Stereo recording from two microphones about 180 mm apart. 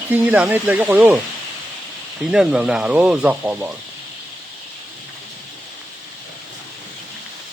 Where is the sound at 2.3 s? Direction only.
5° right (ahead or behind).